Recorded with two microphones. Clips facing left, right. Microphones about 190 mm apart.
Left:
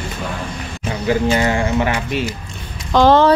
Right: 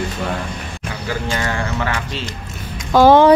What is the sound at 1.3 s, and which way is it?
Speech, 20° left (ahead or behind).